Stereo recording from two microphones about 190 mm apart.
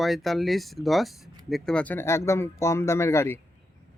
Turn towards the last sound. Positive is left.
turn(degrees=15)  # may be behind; listen again after turning